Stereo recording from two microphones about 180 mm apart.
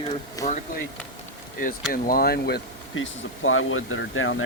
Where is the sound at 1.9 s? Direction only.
50° left (ahead or behind).